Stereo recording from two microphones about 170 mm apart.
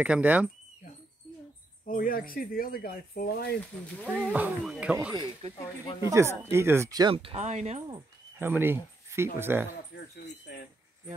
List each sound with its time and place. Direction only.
0.0 s speech: 10° right (ahead or behind)
1.9 s speech: 55° left (ahead or behind)
4.0 s speech: 5° left (ahead or behind)
4.3 s speech: 10° right (ahead or behind)
5.4 s speech: 40° right (ahead or behind)
6.0 s speech: 15° right (ahead or behind); by 7.8 s 40° right (ahead or behind)
8.4 s speech: 10° right (ahead or behind)
9.9 s speech: 70° left (ahead or behind)
10.5 s speech: 85° left